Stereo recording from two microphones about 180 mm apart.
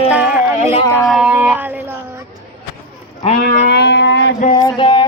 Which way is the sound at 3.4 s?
55° left (ahead or behind).